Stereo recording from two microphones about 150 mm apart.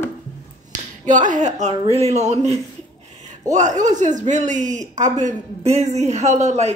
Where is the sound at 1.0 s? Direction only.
55° right (ahead or behind).